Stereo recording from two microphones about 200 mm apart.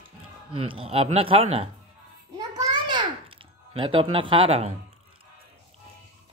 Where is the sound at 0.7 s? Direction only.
30° right (ahead or behind).